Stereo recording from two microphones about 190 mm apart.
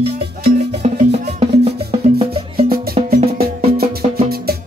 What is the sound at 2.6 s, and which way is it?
Music, 50° right (ahead or behind).